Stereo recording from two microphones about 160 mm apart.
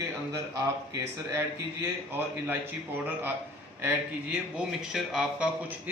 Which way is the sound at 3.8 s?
5° right (ahead or behind).